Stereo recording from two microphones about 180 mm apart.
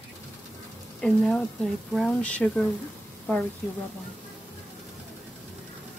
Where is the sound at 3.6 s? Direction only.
10° left (ahead or behind).